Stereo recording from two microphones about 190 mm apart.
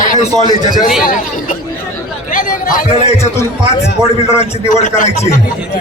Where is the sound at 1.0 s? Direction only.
45° left (ahead or behind).